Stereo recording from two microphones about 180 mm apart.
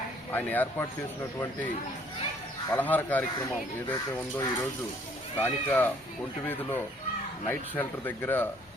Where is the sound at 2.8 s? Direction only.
10° left (ahead or behind).